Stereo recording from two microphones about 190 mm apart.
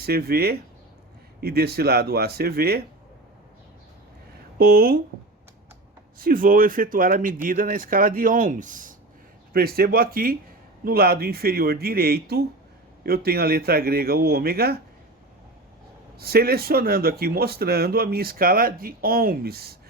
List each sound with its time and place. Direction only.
0.0 s speech: 55° right (ahead or behind)
4.5 s speech: 55° right (ahead or behind)
6.1 s speech: 50° right (ahead or behind)
16.1 s speech: 55° right (ahead or behind)